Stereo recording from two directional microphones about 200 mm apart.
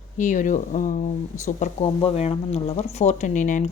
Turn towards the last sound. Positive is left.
turn(degrees=40)  # may be behind; listen again after turning